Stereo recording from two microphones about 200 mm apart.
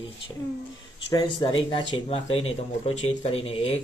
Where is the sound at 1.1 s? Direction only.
20° left (ahead or behind).